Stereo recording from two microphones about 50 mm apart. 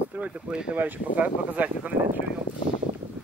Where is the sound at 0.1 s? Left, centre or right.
Right.